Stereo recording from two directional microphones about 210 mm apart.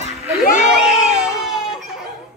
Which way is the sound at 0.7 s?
Centre (ahead or behind).